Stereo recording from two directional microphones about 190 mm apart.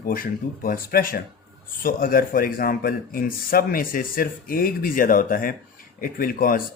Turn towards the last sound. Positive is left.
turn(degrees=50)  # may be behind; listen again after turning